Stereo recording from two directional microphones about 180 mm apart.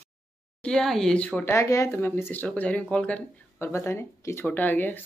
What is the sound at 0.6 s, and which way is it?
Speech, 5° left (ahead or behind).